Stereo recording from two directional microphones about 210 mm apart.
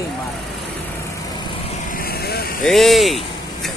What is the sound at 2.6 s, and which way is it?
Speech, centre (ahead or behind).